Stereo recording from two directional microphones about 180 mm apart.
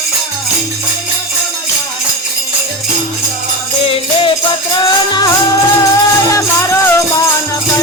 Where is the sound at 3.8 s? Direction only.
30° left (ahead or behind).